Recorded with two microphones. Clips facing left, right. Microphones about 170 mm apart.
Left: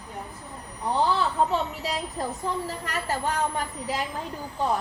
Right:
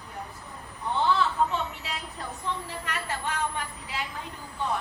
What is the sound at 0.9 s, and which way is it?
A woman's voice, 35° left (ahead or behind).